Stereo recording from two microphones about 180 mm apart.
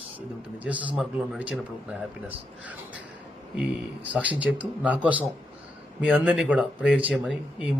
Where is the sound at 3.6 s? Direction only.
10° right (ahead or behind).